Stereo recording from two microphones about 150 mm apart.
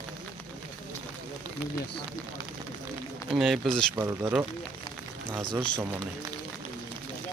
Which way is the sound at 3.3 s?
Centre (ahead or behind).